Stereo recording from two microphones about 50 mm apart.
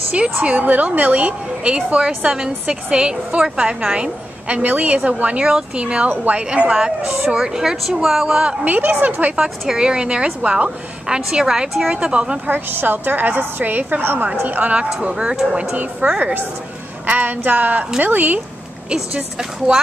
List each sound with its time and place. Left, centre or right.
0.1 s a woman's voice: right
8.6 s a woman's voice: right
9.4 s a woman's voice: centre
12.4 s a woman's voice: right; by 15.3 s centre
15.7 s a woman's voice: right
19.1 s a woman's voice: centre